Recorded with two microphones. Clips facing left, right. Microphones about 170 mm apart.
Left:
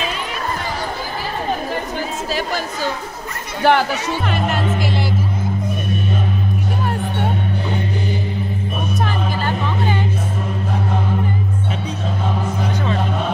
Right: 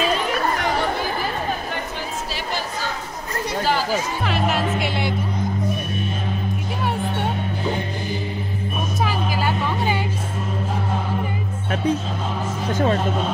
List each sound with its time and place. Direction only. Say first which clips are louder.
3.6 s chatter: left 8 dB; 65° left (ahead or behind)
4.3 s speech: even; centre (ahead or behind)
6.8 s music: left 2 dB; centre (ahead or behind)
9.0 s music: right 2 dB; 10° right (ahead or behind)